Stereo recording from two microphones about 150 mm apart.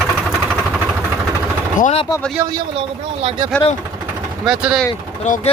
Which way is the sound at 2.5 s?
40° right (ahead or behind).